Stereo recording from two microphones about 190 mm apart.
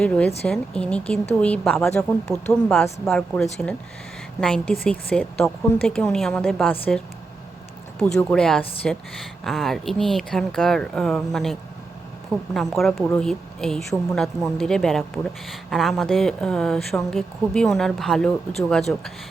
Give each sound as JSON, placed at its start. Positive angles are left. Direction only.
{"t": 0.0, "sound": "speech", "side_deg": 5}
{"t": 7.9, "sound": "speech", "side_deg": 5}